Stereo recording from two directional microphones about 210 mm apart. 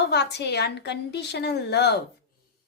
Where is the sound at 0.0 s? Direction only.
50° left (ahead or behind).